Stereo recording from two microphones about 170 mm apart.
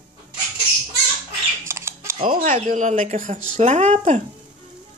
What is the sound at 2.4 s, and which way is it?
Speech, 45° right (ahead or behind).